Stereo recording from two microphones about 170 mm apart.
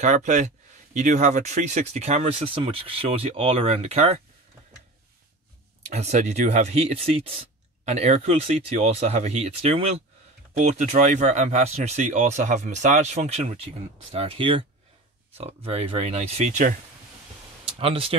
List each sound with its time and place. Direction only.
0.0 s speech: 45° right (ahead or behind)
5.8 s speech: 40° right (ahead or behind)